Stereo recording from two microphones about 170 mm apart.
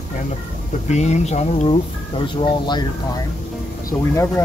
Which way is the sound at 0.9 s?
40° left (ahead or behind).